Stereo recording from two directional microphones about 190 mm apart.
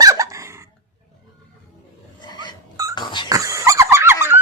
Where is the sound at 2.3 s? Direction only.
25° left (ahead or behind).